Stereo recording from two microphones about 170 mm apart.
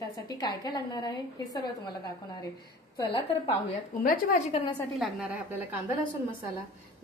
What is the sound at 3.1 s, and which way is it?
A woman's voice, 35° left (ahead or behind).